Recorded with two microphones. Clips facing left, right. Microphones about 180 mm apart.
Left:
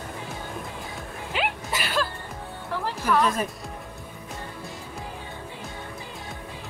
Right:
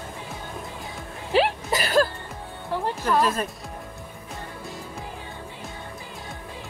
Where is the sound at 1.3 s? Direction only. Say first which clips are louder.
Right 8 dB; 35° right (ahead or behind).